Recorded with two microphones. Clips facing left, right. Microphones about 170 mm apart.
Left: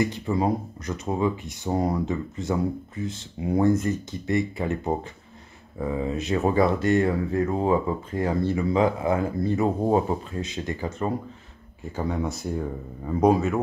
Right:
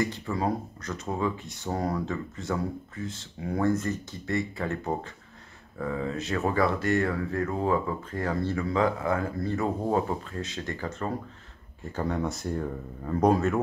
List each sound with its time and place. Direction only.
0.0 s speech: 15° left (ahead or behind)